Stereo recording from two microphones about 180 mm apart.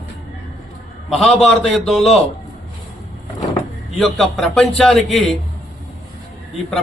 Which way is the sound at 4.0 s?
Centre (ahead or behind).